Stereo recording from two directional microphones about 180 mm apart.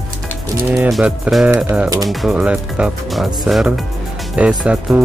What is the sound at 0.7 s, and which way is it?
Speech, 5° right (ahead or behind).